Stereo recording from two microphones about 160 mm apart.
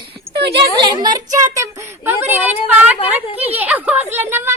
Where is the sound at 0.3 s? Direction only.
90° right.